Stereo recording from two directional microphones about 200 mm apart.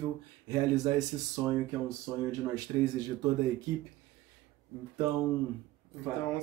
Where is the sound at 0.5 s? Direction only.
20° right (ahead or behind).